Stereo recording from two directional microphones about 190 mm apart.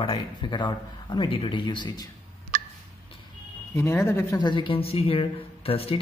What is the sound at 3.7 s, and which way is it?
Speech, 15° left (ahead or behind).